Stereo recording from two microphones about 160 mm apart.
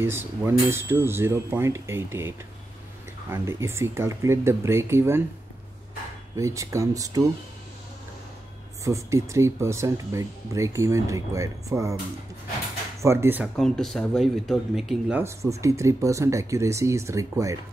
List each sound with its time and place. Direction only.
0.0 s cutlery: 15° right (ahead or behind)
6.3 s speech: 20° right (ahead or behind)
8.8 s speech: 20° right (ahead or behind)
13.0 s cutlery: 15° right (ahead or behind)
13.6 s speech: 5° left (ahead or behind)
15.2 s speech: 20° right (ahead or behind)